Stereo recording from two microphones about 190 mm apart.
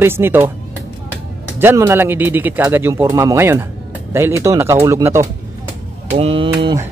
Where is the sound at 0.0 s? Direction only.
10° right (ahead or behind).